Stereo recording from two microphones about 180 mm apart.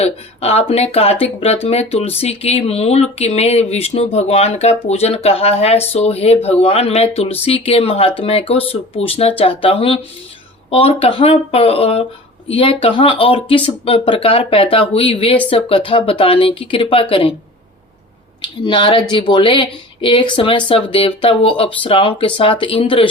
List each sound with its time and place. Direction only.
0.0 s speech: 35° left (ahead or behind)
18.4 s speech: 25° left (ahead or behind)